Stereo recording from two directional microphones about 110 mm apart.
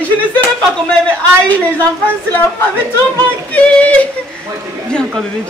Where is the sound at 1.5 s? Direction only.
15° left (ahead or behind).